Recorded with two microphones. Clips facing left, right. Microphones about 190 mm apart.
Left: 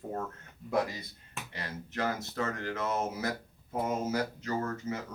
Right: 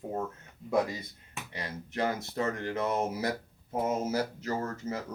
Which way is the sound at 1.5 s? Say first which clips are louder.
Right 2 dB; 20° right (ahead or behind).